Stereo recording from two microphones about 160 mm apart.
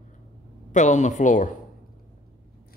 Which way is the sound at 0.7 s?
50° left (ahead or behind).